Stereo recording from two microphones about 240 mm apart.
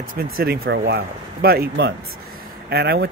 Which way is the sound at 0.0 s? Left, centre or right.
Right.